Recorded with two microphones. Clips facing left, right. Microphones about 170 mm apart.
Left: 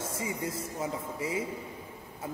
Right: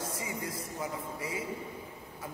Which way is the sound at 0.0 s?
25° left (ahead or behind).